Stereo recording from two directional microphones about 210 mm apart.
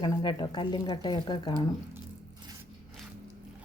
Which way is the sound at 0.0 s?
20° left (ahead or behind).